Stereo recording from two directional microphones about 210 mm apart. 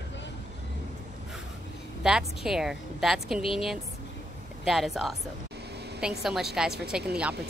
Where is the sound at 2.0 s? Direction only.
5° right (ahead or behind).